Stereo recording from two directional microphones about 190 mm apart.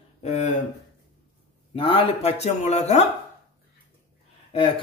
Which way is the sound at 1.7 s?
30° left (ahead or behind).